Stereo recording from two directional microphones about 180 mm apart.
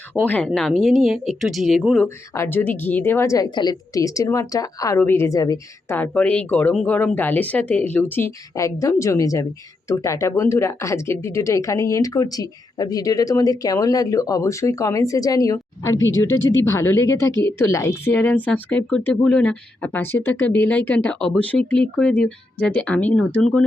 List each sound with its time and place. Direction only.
0.3 s speech: 5° left (ahead or behind)
2.0 s speech: 15° left (ahead or behind)
6.0 s speech: 5° left (ahead or behind)